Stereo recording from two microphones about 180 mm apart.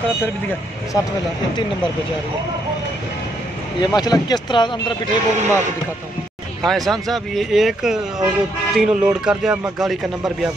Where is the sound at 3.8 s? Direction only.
25° left (ahead or behind).